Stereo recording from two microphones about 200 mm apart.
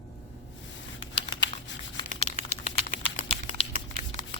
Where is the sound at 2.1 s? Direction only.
35° left (ahead or behind).